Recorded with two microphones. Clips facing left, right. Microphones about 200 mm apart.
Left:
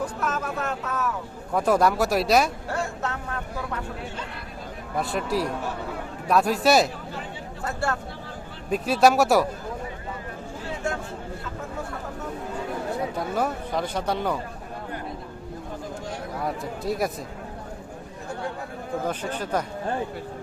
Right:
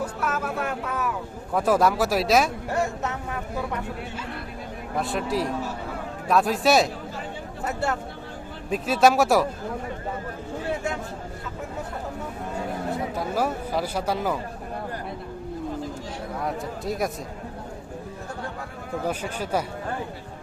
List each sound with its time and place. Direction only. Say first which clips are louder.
0.0 s speech: even; 10° right (ahead or behind)
1.5 s speech: even; centre (ahead or behind)
2.6 s speech: right 3 dB; 20° right (ahead or behind)
4.9 s speech: even; centre (ahead or behind)
7.6 s speech: right 1 dB; 20° right (ahead or behind)
8.7 s speech: even; centre (ahead or behind)
12.9 s speech: even; 5° right (ahead or behind)
16.4 s speech: even; centre (ahead or behind)
19.0 s speech: right 3 dB; 10° right (ahead or behind)